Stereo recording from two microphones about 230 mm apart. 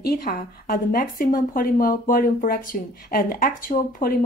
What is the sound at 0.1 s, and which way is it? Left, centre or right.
Speech, left.